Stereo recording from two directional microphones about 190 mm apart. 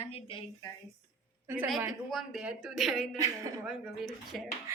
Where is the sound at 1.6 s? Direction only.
5° right (ahead or behind).